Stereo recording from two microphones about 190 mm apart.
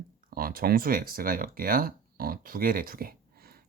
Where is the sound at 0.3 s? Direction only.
50° right (ahead or behind).